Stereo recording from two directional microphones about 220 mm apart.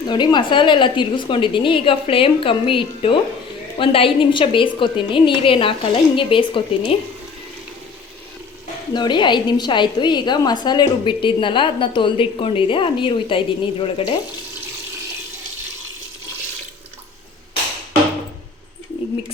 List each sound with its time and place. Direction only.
0.1 s a woman's voice: 20° left (ahead or behind)
8.9 s a woman's voice: 20° left (ahead or behind)